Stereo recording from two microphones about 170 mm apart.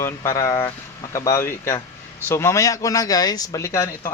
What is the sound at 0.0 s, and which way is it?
Speech, 15° left (ahead or behind).